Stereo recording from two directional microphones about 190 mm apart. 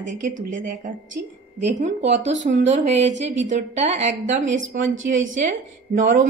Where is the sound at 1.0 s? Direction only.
75° right (ahead or behind).